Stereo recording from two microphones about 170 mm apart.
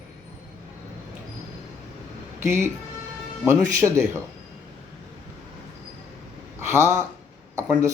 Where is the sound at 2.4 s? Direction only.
15° right (ahead or behind).